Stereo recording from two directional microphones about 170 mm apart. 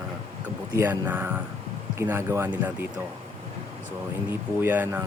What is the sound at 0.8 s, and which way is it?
Speech, 10° right (ahead or behind).